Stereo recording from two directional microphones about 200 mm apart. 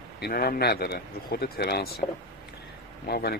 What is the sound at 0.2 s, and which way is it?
Speech, 50° left (ahead or behind).